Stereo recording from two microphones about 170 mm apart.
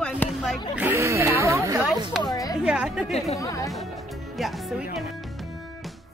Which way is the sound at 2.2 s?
20° left (ahead or behind).